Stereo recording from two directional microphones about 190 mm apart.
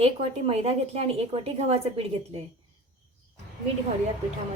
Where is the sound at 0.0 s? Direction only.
30° right (ahead or behind).